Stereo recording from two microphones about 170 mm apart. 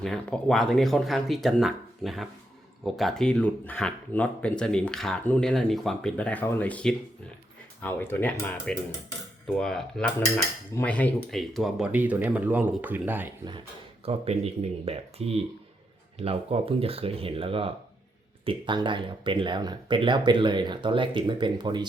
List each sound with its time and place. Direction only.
0.0 s speech: 5° left (ahead or behind)
10.2 s speech: 15° left (ahead or behind); by 13.3 s 10° right (ahead or behind)
14.0 s speech: 35° right (ahead or behind)